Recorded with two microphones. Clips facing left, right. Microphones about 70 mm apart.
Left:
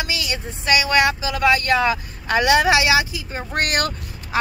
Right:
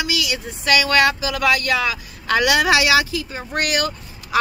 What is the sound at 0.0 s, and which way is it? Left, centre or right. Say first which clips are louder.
Speech: right 2 dB; left.